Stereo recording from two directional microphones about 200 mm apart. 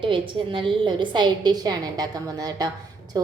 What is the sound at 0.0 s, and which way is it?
A woman's voice, 25° right (ahead or behind).